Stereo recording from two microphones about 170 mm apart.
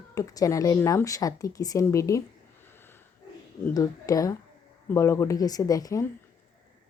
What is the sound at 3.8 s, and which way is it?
Speech, 20° left (ahead or behind).